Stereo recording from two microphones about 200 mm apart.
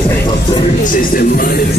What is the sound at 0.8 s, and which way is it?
Speech, 45° left (ahead or behind).